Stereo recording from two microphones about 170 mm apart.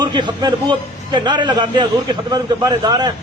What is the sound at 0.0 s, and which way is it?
A man's voice, 25° right (ahead or behind).